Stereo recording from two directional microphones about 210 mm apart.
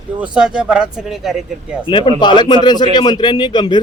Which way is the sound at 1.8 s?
25° left (ahead or behind).